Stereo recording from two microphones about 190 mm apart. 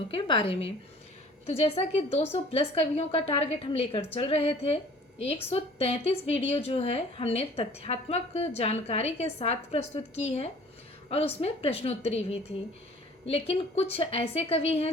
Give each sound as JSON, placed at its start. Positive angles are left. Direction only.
{"t": 0.1, "sound": "a woman's voice", "side_deg": 25}